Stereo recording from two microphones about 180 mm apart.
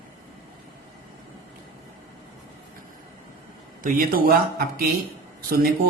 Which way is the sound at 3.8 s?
55° right (ahead or behind).